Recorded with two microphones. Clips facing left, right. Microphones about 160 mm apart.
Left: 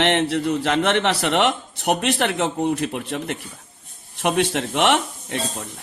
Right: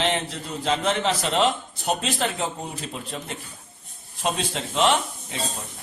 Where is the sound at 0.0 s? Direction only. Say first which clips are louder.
Left 7 dB; 70° left (ahead or behind).